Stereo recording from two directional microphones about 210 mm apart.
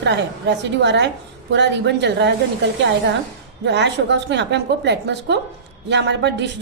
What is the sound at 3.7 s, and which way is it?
A woman's voice, 55° right (ahead or behind).